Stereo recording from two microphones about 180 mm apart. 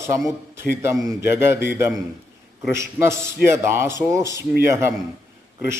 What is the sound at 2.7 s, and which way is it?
A man's voice, 15° right (ahead or behind).